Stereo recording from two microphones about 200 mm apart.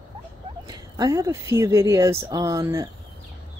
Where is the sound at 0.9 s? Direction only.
20° right (ahead or behind).